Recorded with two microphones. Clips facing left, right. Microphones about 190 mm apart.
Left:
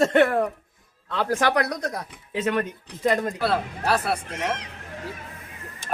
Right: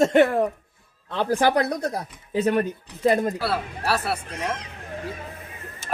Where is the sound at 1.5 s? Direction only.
30° right (ahead or behind).